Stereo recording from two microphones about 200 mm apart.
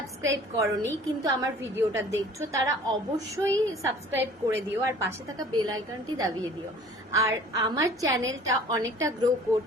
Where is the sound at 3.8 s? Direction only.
15° right (ahead or behind).